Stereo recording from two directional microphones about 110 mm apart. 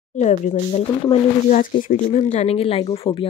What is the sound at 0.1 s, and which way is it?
Speech, 90° left.